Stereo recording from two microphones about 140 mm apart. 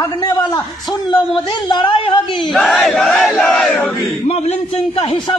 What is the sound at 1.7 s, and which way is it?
Speech, 35° left (ahead or behind).